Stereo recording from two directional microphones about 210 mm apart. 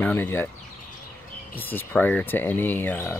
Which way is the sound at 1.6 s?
10° left (ahead or behind).